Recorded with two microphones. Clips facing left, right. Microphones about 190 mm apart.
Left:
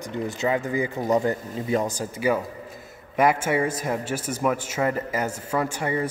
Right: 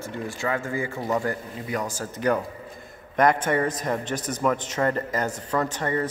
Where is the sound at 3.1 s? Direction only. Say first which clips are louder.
Even; 5° left (ahead or behind).